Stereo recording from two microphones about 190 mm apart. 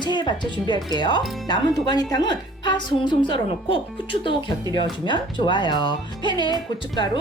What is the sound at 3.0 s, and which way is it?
Speech, 25° left (ahead or behind).